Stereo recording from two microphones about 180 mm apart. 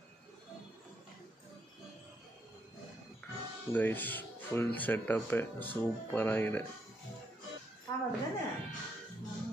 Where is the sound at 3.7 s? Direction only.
10° left (ahead or behind).